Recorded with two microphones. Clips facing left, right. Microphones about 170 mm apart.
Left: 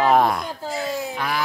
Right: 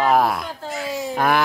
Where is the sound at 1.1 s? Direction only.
50° right (ahead or behind).